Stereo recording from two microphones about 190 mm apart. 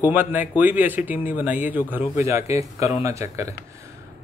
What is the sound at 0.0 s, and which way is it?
A man's voice, 10° right (ahead or behind).